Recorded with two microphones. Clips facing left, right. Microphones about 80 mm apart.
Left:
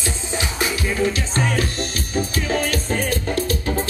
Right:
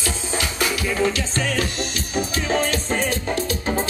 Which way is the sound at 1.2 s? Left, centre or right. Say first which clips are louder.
Left 2 dB; left.